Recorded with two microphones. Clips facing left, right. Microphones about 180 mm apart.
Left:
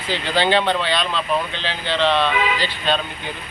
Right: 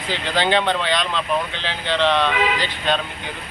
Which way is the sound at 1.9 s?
15° left (ahead or behind).